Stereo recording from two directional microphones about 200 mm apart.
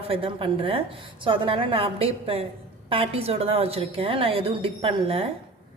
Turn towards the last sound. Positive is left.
turn(degrees=-25)  # may be behind; listen again after turning